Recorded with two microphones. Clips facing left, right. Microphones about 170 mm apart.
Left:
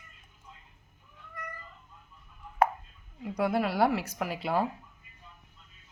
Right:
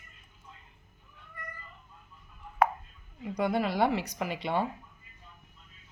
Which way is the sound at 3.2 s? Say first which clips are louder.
Left 1 dB; 5° left (ahead or behind).